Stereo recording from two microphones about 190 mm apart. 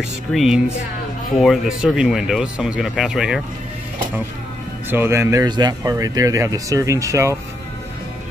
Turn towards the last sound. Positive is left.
turn(degrees=-15)  # may be behind; listen again after turning